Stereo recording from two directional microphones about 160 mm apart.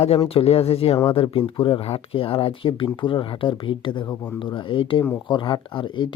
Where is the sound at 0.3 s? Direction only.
40° left (ahead or behind); by 4.4 s 15° left (ahead or behind).